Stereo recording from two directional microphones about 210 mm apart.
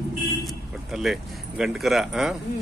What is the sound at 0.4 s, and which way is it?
Speech, centre (ahead or behind).